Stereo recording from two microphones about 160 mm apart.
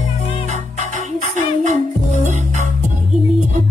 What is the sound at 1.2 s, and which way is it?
Music, 50° right (ahead or behind).